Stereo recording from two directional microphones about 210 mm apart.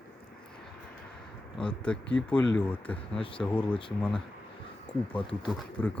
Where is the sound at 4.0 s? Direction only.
5° left (ahead or behind).